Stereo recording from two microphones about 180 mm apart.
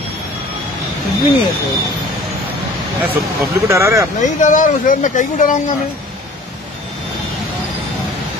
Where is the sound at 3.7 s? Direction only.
15° right (ahead or behind).